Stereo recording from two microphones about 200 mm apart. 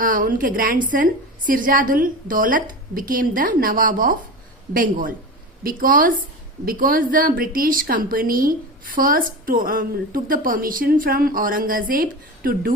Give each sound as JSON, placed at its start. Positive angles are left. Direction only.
{"t": 0.0, "sound": "a woman's voice", "side_deg": -45}